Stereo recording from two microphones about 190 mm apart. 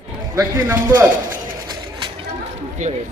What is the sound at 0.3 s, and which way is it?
Speech, 15° right (ahead or behind).